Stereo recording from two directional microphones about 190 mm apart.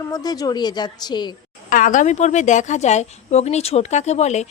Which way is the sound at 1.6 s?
45° left (ahead or behind).